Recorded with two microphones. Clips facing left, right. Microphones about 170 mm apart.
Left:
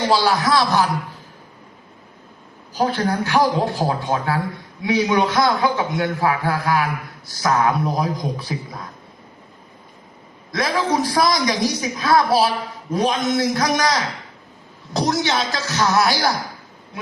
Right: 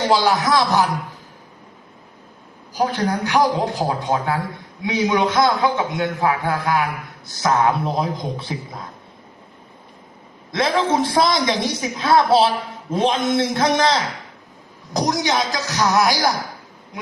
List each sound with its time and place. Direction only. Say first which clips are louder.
0.1 s a man's voice: right 1 dB; 20° right (ahead or behind)
2.7 s a man's voice: left 1 dB; 15° right (ahead or behind)
10.5 s a man's voice: right 2 dB; 25° right (ahead or behind)
14.9 s a man's voice: even; 15° right (ahead or behind)